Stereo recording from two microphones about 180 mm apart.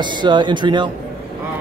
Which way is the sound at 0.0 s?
25° right (ahead or behind).